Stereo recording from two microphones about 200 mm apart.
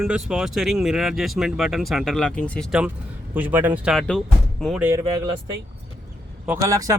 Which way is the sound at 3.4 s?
10° right (ahead or behind).